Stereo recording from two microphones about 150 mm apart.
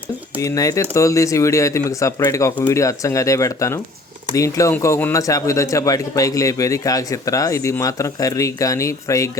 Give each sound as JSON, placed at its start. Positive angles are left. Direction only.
{"t": 0.4, "sound": "speech", "side_deg": 20}